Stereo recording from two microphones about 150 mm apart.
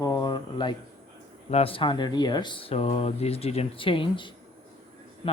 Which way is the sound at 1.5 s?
40° left (ahead or behind).